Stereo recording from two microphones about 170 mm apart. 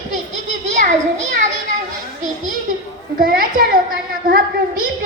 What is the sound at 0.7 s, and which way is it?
Children playing, 45° right (ahead or behind).